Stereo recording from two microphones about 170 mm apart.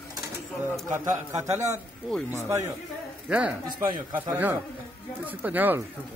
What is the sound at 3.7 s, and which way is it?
Speech, 25° right (ahead or behind).